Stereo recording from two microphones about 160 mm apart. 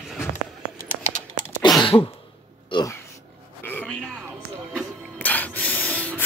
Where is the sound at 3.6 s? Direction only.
10° left (ahead or behind).